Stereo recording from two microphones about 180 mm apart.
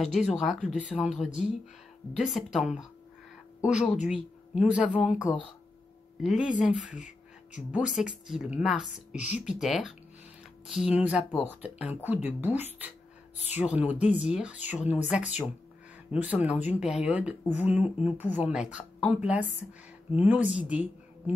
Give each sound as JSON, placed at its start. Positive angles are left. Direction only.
{"t": 0.0, "sound": "a woman's voice", "side_deg": 0}
{"t": 2.1, "sound": "a woman's voice", "side_deg": 0}
{"t": 3.9, "sound": "speech", "side_deg": 40}
{"t": 4.6, "sound": "a woman's voice", "side_deg": -5}
{"t": 6.2, "sound": "a woman's voice", "side_deg": -5}